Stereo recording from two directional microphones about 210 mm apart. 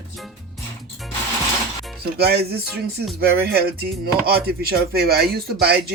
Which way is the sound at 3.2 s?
50° right (ahead or behind).